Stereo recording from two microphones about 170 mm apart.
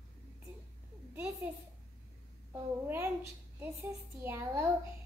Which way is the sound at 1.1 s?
10° right (ahead or behind).